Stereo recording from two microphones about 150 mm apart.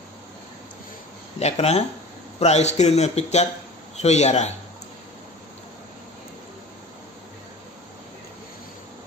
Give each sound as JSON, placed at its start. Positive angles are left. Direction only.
{"t": 1.4, "sound": "speech", "side_deg": 45}